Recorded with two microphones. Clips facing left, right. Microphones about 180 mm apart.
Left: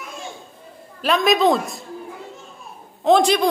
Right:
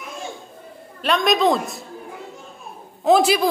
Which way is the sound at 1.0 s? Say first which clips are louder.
Left 1 dB; centre (ahead or behind).